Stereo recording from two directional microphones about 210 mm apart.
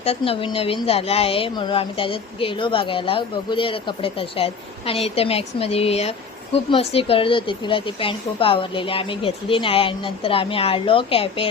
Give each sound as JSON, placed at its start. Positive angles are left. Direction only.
{"t": 0.0, "sound": "speech", "side_deg": 25}